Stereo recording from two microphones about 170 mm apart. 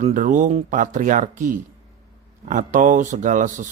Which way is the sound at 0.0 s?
50° right (ahead or behind).